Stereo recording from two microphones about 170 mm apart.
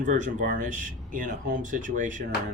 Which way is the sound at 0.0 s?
50° right (ahead or behind).